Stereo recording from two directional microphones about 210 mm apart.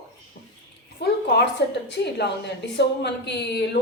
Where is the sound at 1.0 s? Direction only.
55° left (ahead or behind).